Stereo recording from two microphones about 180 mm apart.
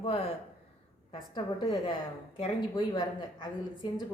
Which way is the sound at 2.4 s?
25° left (ahead or behind).